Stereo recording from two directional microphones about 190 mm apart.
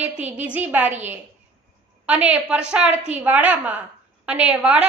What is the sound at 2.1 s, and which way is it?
A woman's voice, 5° right (ahead or behind).